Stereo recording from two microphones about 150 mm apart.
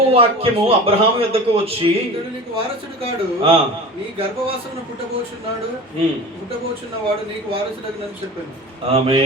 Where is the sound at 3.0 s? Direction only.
40° right (ahead or behind).